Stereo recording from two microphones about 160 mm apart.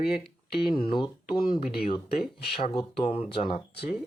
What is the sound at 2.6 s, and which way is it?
Speech, 30° left (ahead or behind).